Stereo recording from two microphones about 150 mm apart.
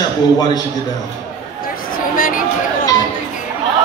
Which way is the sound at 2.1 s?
65° left (ahead or behind).